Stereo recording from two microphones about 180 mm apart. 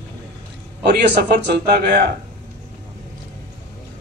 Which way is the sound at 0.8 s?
65° right (ahead or behind).